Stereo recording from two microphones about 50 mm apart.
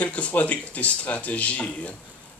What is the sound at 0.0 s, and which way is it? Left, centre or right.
Speech, left.